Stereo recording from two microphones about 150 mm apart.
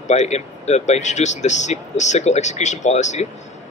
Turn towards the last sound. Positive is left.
turn(degrees=50)  # may be behind; listen again after turning